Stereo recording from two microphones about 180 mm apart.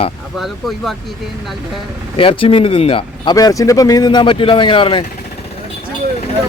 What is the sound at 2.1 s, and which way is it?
Speech, 30° left (ahead or behind).